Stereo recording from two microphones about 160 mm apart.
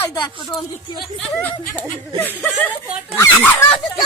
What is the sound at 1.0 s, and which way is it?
Speech, 10° left (ahead or behind).